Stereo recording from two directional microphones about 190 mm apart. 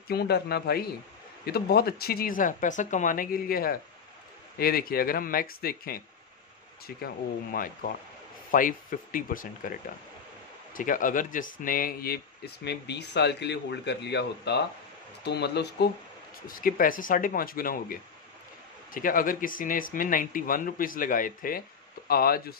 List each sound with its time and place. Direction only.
0.1 s speech: 55° left (ahead or behind)
10.7 s speech: 45° left (ahead or behind); by 15.9 s 60° left (ahead or behind)
16.4 s speech: 50° left (ahead or behind)